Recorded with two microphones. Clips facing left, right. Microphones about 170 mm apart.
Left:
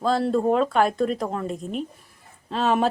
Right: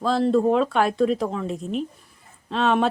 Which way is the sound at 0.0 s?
Centre (ahead or behind).